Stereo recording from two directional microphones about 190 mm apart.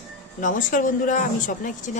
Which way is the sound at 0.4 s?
45° left (ahead or behind).